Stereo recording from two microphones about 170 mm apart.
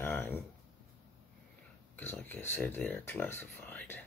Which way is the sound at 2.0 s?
10° left (ahead or behind).